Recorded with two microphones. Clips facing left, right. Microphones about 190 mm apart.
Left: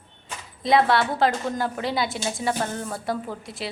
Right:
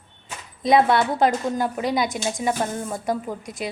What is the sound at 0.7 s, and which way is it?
A woman's voice, 20° right (ahead or behind).